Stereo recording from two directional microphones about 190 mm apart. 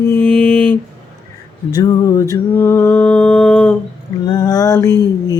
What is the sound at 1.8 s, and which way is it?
Music, 20° left (ahead or behind).